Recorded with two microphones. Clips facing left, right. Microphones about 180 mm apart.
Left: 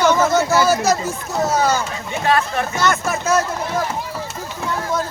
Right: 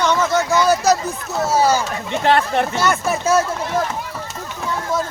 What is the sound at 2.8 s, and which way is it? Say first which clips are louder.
Speech: right 1 dB; 10° right (ahead or behind).